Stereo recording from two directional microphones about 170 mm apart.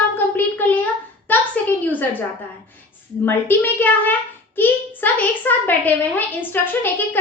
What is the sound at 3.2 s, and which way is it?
A child's voice, 10° left (ahead or behind).